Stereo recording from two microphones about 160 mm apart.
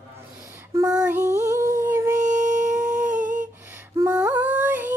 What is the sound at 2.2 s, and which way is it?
Humming, 50° right (ahead or behind).